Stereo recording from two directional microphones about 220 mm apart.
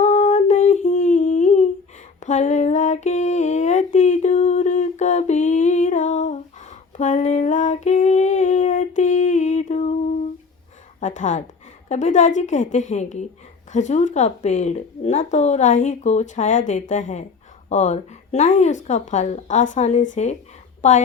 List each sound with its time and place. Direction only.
0.0 s humming: 35° left (ahead or behind)
11.0 s speech: 35° left (ahead or behind)